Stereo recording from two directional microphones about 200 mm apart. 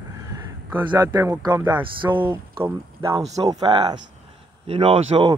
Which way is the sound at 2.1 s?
10° right (ahead or behind).